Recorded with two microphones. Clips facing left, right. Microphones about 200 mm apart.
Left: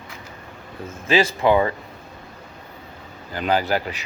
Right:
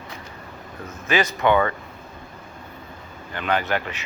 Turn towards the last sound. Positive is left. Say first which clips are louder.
# left 3 dB
turn(degrees=35)  # may be behind; listen again after turning